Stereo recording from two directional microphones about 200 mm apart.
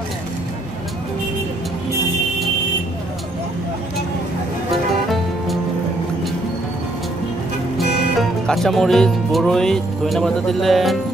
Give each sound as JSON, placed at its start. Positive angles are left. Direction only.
{"t": 7.8, "sound": "music", "side_deg": 55}
{"t": 8.2, "sound": "speech", "side_deg": 0}